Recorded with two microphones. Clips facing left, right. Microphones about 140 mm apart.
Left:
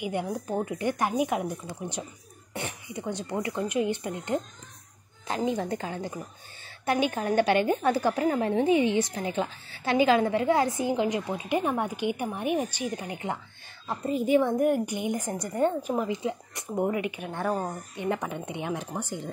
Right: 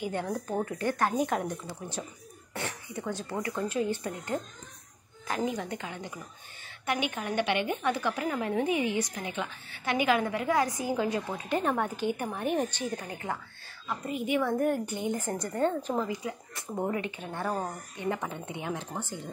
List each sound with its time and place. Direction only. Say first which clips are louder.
0.0 s a woman's voice: left 2 dB; 15° left (ahead or behind)
13.8 s a woman's voice: left 5 dB; 35° left (ahead or behind)
14.4 s a woman's voice: left 4 dB; 15° left (ahead or behind)